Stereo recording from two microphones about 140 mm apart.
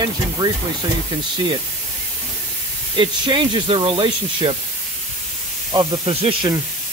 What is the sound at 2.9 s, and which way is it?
Speech, 35° right (ahead or behind).